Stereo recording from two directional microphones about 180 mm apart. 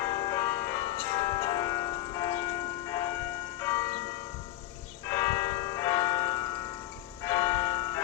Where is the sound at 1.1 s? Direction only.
25° left (ahead or behind).